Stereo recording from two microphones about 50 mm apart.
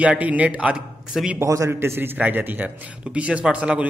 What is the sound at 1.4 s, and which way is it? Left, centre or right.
Speech, right.